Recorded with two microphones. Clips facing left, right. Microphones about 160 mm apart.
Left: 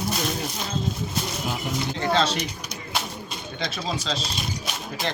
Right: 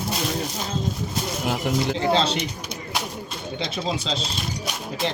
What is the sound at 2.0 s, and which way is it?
Speech, 25° right (ahead or behind).